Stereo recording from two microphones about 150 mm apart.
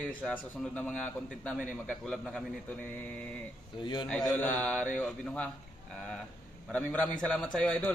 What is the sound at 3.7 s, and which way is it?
Speech, 30° left (ahead or behind).